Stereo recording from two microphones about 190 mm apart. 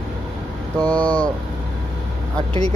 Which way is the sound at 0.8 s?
10° left (ahead or behind).